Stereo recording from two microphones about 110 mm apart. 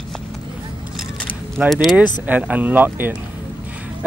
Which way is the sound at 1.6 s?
15° right (ahead or behind).